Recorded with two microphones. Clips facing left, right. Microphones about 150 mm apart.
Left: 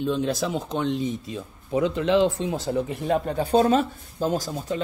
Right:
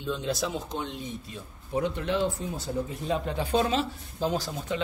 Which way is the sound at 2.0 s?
90° left.